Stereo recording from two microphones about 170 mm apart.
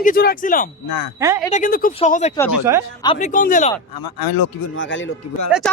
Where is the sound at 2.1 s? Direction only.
45° left (ahead or behind).